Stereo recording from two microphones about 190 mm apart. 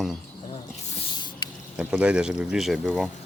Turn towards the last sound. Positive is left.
turn(degrees=5)  # may be behind; listen again after turning